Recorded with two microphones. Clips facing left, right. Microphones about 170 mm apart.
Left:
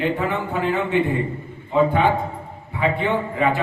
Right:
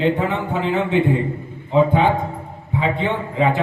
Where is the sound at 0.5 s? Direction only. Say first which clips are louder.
Right 2 dB; 20° right (ahead or behind).